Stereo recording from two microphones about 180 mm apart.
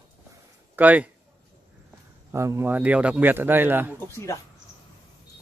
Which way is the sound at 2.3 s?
15° right (ahead or behind).